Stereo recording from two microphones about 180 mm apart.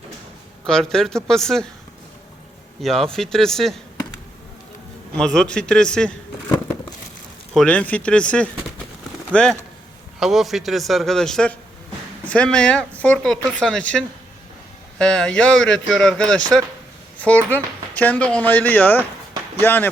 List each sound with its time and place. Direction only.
0.7 s speech: 5° left (ahead or behind)
2.8 s speech: centre (ahead or behind)
5.1 s speech: 5° left (ahead or behind)
7.5 s speech: 5° left (ahead or behind)